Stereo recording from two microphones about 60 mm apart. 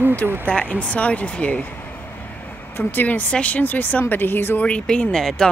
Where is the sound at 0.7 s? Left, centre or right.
Left.